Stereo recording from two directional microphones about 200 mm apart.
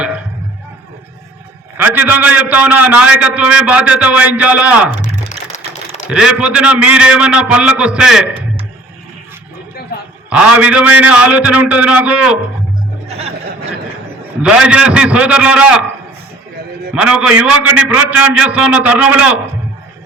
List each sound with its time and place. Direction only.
1.8 s a man's voice: 10° right (ahead or behind)
6.1 s a man's voice: 5° right (ahead or behind)
10.2 s a man's voice: 5° right (ahead or behind)
13.1 s music: 30° right (ahead or behind)
14.4 s a man's voice: 5° right (ahead or behind)
16.9 s a man's voice: 5° right (ahead or behind)